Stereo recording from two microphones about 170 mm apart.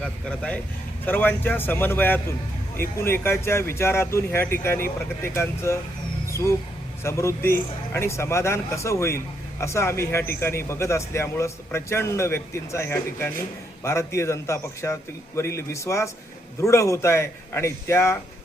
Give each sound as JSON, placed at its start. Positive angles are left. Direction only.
{"t": 0.0, "sound": "a man's voice", "side_deg": 5}